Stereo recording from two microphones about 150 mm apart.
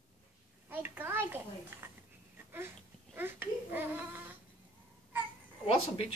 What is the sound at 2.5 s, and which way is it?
Babbling, 15° right (ahead or behind).